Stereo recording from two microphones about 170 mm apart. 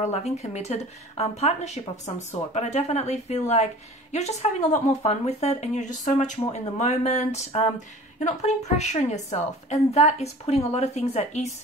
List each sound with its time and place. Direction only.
0.0 s speech: 40° left (ahead or behind)